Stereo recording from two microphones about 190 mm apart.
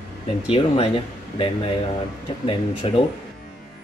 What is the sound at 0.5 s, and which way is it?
Speech, 25° left (ahead or behind).